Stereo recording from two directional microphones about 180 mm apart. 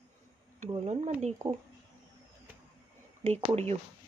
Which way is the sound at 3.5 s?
35° right (ahead or behind).